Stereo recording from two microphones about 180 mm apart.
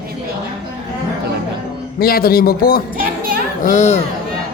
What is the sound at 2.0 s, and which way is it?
Speech, 55° left (ahead or behind).